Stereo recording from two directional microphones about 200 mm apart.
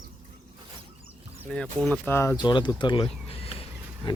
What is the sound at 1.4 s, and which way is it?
Speech, 5° left (ahead or behind).